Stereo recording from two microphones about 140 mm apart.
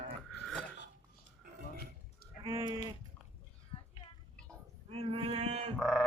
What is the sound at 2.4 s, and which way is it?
Sheep, 30° right (ahead or behind).